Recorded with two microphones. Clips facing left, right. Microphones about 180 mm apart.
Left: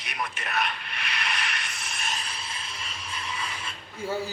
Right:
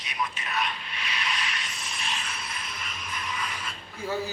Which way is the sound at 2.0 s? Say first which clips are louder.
Even; 35° left (ahead or behind).